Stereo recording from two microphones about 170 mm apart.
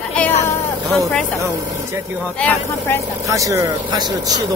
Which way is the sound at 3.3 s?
20° right (ahead or behind).